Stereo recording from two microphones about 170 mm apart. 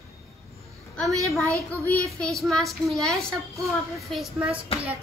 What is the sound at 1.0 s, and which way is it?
Speech, 20° right (ahead or behind).